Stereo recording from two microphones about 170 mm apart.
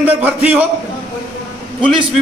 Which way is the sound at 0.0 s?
10° right (ahead or behind).